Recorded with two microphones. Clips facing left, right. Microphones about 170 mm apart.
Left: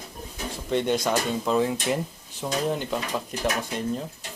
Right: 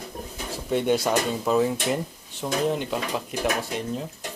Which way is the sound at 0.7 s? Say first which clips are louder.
Right 2 dB; 5° right (ahead or behind).